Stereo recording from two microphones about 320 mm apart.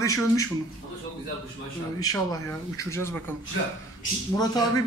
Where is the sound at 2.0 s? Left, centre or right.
Centre.